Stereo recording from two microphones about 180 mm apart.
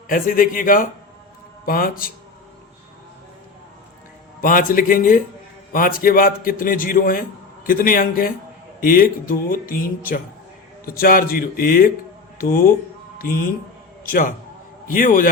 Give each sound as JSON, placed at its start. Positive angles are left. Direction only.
{"t": 0.1, "sound": "a man's voice", "side_deg": 50}
{"t": 4.4, "sound": "a man's voice", "side_deg": 50}